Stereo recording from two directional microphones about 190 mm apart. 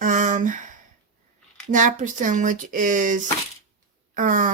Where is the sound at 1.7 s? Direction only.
40° right (ahead or behind).